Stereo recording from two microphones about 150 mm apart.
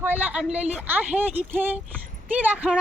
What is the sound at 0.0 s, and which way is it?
Speech, 10° right (ahead or behind).